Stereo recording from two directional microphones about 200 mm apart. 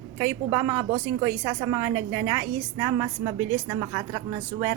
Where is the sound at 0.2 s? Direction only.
15° right (ahead or behind).